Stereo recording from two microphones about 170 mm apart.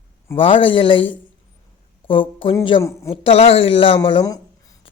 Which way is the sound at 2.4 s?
30° left (ahead or behind).